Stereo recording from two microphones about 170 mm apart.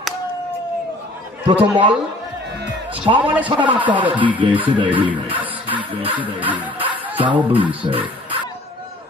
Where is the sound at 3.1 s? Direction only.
35° right (ahead or behind).